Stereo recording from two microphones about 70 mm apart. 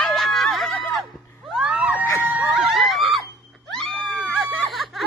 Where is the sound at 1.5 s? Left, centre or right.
Centre.